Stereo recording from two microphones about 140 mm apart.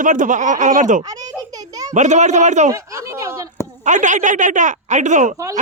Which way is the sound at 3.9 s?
60° right (ahead or behind).